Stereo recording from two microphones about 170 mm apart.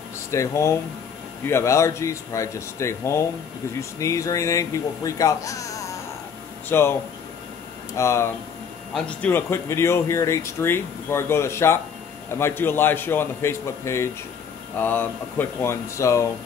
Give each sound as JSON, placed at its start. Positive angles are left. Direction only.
{"t": 0.3, "sound": "speech", "side_deg": 15}